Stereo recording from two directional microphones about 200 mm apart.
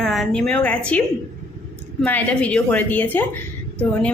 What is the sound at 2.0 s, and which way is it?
A woman's voice, 5° left (ahead or behind).